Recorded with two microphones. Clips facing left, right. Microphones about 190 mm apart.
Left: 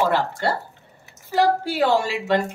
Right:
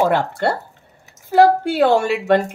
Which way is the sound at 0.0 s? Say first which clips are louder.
Right 4 dB; 50° right (ahead or behind).